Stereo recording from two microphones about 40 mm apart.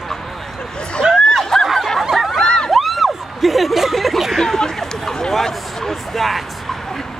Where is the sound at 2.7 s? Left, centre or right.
Centre.